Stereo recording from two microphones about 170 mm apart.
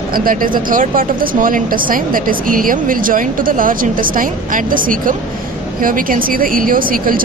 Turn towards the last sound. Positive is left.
turn(degrees=-55)  # may be behind; listen again after turning